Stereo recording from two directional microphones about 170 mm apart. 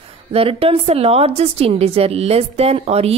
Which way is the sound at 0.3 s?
35° right (ahead or behind).